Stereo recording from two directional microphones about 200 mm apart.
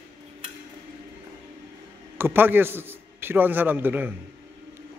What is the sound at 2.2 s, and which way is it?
A man's voice, 10° right (ahead or behind).